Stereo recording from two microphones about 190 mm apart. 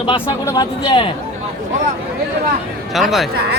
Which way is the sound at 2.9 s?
Centre (ahead or behind).